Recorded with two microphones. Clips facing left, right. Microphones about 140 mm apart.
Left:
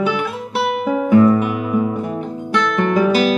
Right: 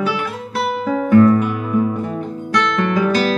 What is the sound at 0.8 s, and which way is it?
Music, 10° left (ahead or behind).